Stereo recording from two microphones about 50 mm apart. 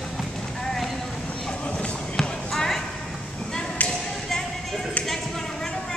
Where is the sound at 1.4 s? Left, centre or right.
Left.